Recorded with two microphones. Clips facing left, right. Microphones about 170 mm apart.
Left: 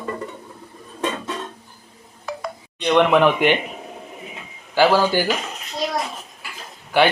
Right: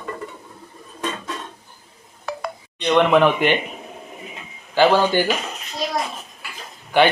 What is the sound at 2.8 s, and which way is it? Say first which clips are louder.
Speech: even; 5° left (ahead or behind).